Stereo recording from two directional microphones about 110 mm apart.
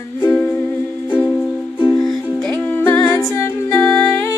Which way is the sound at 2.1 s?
10° left (ahead or behind).